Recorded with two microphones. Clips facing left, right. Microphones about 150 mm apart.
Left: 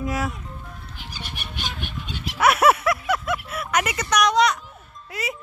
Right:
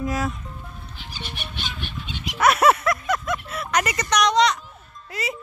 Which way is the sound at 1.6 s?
50° left (ahead or behind).